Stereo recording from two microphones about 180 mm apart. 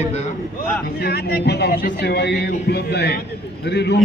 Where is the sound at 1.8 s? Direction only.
50° left (ahead or behind).